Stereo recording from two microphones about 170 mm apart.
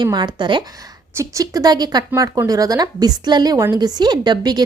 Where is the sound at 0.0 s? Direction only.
25° right (ahead or behind).